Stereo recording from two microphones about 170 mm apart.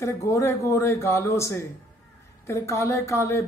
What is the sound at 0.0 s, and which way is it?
Speech, 15° left (ahead or behind).